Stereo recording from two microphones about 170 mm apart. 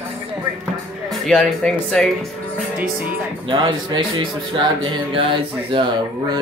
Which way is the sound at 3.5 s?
30° right (ahead or behind).